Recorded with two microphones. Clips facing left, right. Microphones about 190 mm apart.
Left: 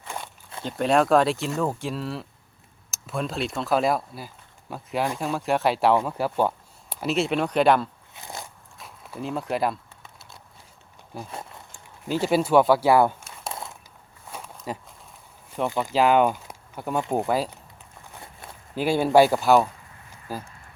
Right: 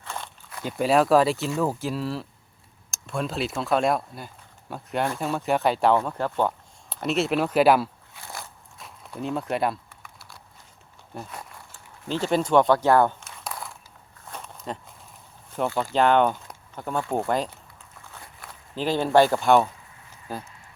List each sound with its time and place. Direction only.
0.6 s speech: 5° right (ahead or behind)
8.1 s biting: 20° left (ahead or behind)
8.8 s speech: centre (ahead or behind)
10.0 s a sound: 20° left (ahead or behind)
11.1 s speech: centre (ahead or behind)
13.2 s crumpling: 25° left (ahead or behind)
14.3 s walk: 10° left (ahead or behind)
15.9 s speech: 5° left (ahead or behind)
18.1 s walk: 25° left (ahead or behind)
18.7 s speech: 10° left (ahead or behind)